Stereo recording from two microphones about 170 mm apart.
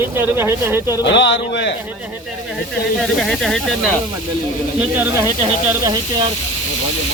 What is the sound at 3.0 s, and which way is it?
Speech, centre (ahead or behind).